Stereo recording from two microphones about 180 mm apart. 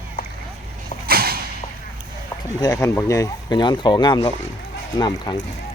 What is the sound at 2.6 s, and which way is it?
Speech, 15° left (ahead or behind).